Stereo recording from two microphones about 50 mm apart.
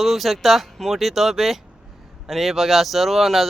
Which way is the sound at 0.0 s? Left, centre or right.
Centre.